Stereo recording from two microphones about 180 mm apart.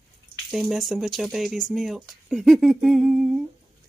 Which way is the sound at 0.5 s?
Centre (ahead or behind).